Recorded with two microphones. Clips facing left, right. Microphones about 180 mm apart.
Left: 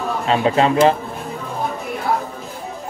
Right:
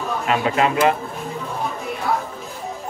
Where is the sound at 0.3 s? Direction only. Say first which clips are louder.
Left 4 dB; 30° left (ahead or behind).